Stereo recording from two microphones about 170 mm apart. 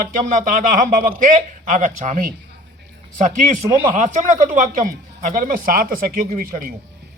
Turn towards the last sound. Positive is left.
turn(degrees=-55)  # may be behind; listen again after turning